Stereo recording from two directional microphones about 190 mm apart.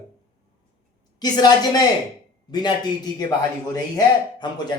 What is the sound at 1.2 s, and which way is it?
Speech, 20° left (ahead or behind).